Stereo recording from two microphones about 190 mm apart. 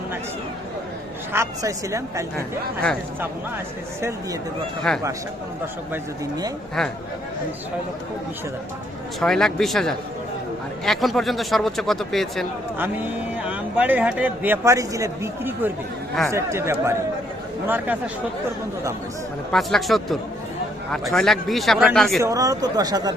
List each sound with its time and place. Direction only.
1.3 s a man's voice: 15° right (ahead or behind)
4.9 s speech: 5° left (ahead or behind)
5.9 s speech: 20° right (ahead or behind)
9.2 s speech: 5° left (ahead or behind)
13.5 s a man's voice: 10° right (ahead or behind)
19.5 s speech: centre (ahead or behind)
22.2 s speech: 15° right (ahead or behind)